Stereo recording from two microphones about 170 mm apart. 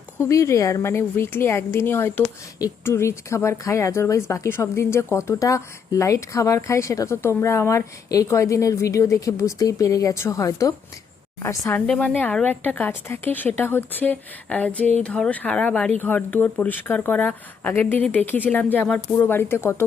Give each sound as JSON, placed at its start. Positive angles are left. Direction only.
{"t": 0.2, "sound": "a woman's voice", "side_deg": 20}
{"t": 11.9, "sound": "a woman's voice", "side_deg": 5}